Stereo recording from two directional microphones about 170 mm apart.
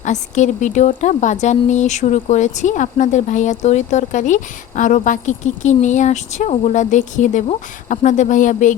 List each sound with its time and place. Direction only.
0.0 s speech: 45° left (ahead or behind)